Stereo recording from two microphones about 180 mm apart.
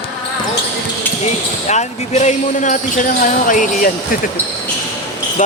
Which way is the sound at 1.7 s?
40° left (ahead or behind).